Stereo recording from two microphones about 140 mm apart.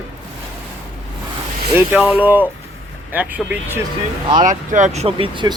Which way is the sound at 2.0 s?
10° right (ahead or behind).